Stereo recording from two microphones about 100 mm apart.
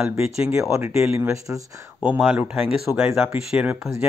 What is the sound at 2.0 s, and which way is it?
Speech, 10° right (ahead or behind).